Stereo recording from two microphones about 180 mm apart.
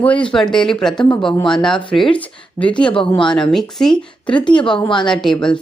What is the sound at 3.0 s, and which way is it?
Speech, 30° left (ahead or behind).